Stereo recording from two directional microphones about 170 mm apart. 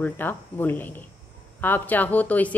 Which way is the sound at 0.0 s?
10° left (ahead or behind).